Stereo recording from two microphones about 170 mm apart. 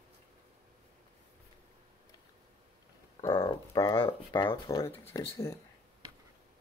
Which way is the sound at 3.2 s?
20° left (ahead or behind).